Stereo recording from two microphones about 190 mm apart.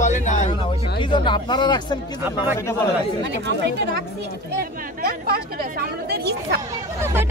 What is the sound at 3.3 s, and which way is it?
Speech, 65° right (ahead or behind).